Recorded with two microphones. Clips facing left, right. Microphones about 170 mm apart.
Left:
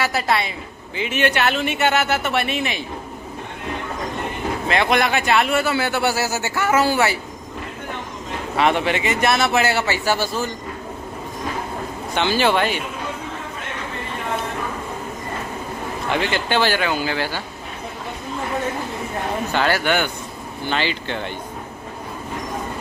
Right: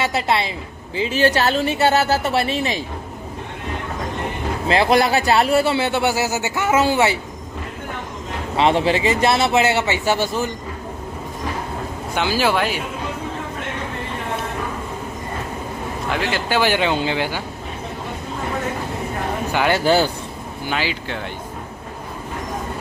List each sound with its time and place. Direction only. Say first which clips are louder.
0.0 s a man's voice: right 1 dB; 25° right (ahead or behind)
4.6 s a man's voice: right 3 dB; 30° right (ahead or behind)
8.5 s a man's voice: right 2 dB; 25° right (ahead or behind)
12.1 s speech: left 1 dB; 5° right (ahead or behind)
16.1 s speech: left 1 dB; 5° right (ahead or behind)
16.6 s a man's voice: right 2 dB; 20° right (ahead or behind)
19.5 s speech: right 2 dB; 15° right (ahead or behind)
19.8 s speech: right 4 dB; 35° right (ahead or behind)
20.6 s speech: left 1 dB; 5° right (ahead or behind)